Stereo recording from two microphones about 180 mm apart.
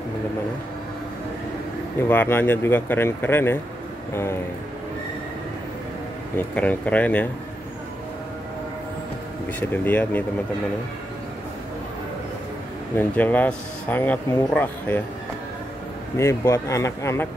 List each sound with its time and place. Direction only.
2.0 s speech: 10° left (ahead or behind)
6.3 s speech: 10° left (ahead or behind)
9.6 s speech: 10° left (ahead or behind)
12.9 s speech: 10° left (ahead or behind)
16.2 s speech: 15° left (ahead or behind)